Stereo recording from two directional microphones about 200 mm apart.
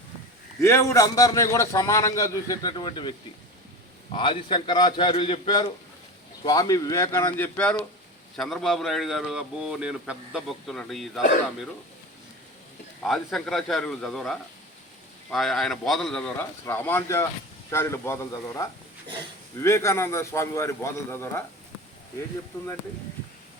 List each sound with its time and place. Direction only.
0.6 s a man's voice: 15° left (ahead or behind)
13.0 s a man's voice: centre (ahead or behind)